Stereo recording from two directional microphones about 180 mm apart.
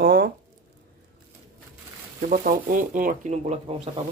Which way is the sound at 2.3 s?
50° right (ahead or behind).